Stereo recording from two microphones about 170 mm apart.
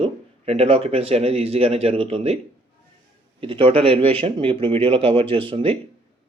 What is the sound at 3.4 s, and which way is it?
Speech, 30° right (ahead or behind).